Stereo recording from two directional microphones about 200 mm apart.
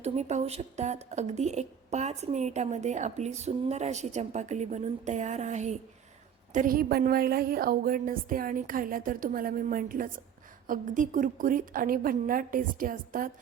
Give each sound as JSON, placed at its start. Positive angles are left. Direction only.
{"t": 0.0, "sound": "a woman's voice", "side_deg": -35}